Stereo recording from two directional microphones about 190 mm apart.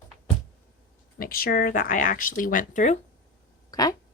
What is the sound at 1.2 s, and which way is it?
Speech, 50° left (ahead or behind).